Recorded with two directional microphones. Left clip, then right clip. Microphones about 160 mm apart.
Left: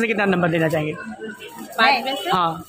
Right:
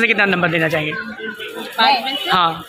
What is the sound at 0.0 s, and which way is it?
Speech, 15° left (ahead or behind).